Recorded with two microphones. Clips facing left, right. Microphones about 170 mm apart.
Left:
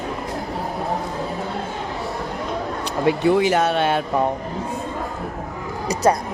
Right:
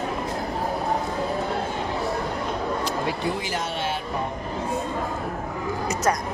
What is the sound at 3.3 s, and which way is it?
Speech, 65° left (ahead or behind).